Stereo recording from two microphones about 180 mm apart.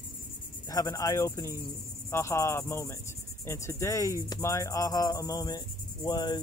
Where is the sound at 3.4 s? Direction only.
15° left (ahead or behind).